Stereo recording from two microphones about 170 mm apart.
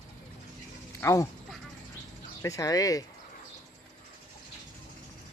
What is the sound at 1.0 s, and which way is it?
Speech, 15° left (ahead or behind).